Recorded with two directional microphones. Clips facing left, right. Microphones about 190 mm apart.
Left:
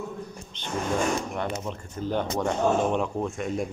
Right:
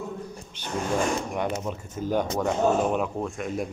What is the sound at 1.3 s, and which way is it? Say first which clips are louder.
A man's voice: right 2 dB; 10° right (ahead or behind).